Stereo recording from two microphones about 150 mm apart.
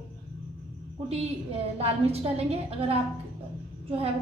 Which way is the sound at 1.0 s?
45° right (ahead or behind).